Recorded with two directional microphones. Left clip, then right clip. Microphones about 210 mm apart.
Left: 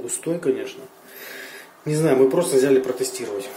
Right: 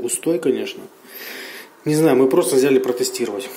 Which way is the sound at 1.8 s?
40° right (ahead or behind).